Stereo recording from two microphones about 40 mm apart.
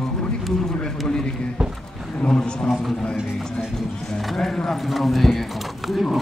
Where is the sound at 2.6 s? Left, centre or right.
Centre.